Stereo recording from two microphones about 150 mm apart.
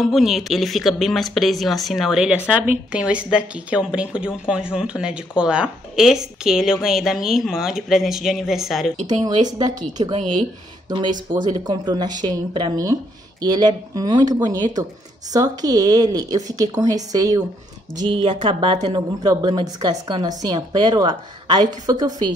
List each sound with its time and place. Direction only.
0.0 s a woman's voice: centre (ahead or behind)
9.0 s a woman's voice: 25° right (ahead or behind)
18.0 s a woman's voice: 35° right (ahead or behind)